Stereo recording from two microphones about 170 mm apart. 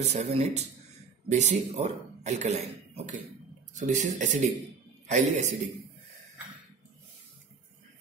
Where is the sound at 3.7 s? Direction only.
45° right (ahead or behind).